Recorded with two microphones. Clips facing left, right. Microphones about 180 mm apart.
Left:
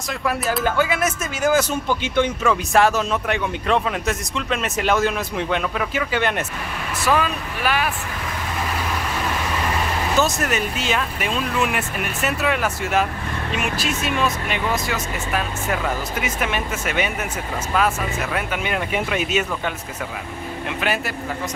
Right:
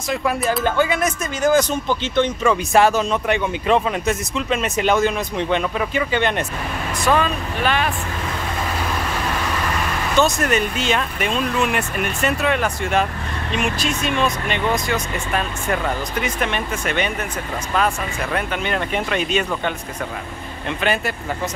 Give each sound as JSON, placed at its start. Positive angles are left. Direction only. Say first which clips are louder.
{"t": 0.1, "sound": "speech", "louder": "right 3 dB", "side_deg": 0}
{"t": 10.1, "sound": "speech", "louder": "right 4 dB", "side_deg": 0}